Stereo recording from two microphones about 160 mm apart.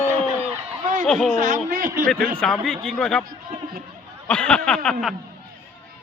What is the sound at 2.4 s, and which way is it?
Speech, 5° left (ahead or behind).